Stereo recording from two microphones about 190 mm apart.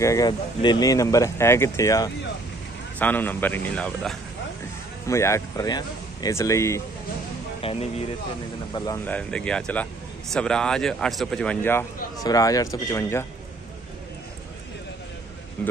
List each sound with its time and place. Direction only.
0.0 s speech: 20° left (ahead or behind)
5.0 s speech: 15° left (ahead or behind)
7.6 s speech: 30° left (ahead or behind)
8.7 s speech: 20° left (ahead or behind)
9.0 s a man's voice: 5° left (ahead or behind)
15.6 s speech: 10° left (ahead or behind)